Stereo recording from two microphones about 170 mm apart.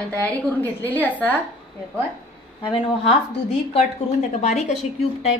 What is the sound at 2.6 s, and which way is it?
A woman's voice, 30° left (ahead or behind).